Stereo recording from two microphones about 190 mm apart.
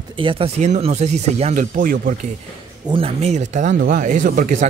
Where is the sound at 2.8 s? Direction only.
30° right (ahead or behind); by 4.7 s 45° right (ahead or behind).